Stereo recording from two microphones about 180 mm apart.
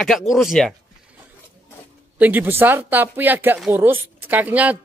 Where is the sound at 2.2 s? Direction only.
10° right (ahead or behind).